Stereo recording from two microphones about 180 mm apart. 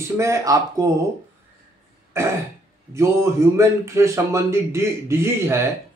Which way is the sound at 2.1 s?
15° right (ahead or behind).